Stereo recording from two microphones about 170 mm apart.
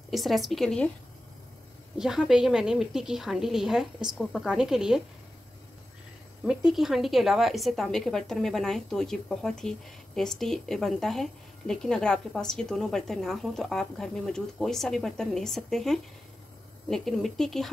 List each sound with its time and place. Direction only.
0.1 s a woman's voice: centre (ahead or behind)
2.0 s a woman's voice: 5° right (ahead or behind)
6.4 s a woman's voice: 5° right (ahead or behind)